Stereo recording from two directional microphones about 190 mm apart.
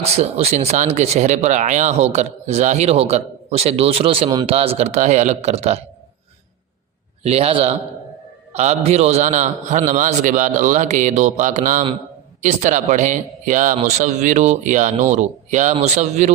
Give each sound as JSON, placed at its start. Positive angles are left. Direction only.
{"t": 0.0, "sound": "speech", "side_deg": -35}
{"t": 7.2, "sound": "speech", "side_deg": -30}